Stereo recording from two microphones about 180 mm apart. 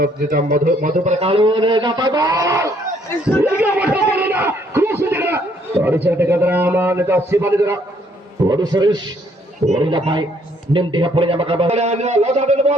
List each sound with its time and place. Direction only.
0.0 s a man's voice: 50° right (ahead or behind)